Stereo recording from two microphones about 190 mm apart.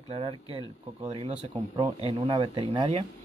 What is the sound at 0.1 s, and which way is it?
Speech, 30° right (ahead or behind).